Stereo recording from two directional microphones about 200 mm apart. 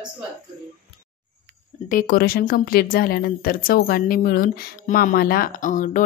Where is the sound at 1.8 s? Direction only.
45° left (ahead or behind).